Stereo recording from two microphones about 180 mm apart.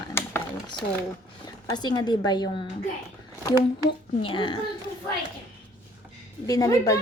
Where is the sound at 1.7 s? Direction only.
25° left (ahead or behind).